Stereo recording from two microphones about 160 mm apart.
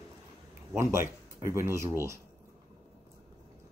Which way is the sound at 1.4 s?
15° right (ahead or behind).